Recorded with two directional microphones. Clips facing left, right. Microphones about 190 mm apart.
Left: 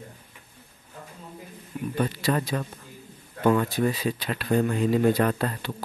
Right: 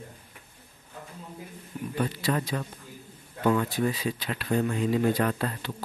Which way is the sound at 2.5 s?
50° left (ahead or behind).